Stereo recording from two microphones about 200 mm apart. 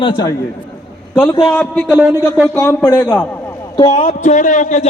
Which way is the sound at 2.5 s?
15° left (ahead or behind).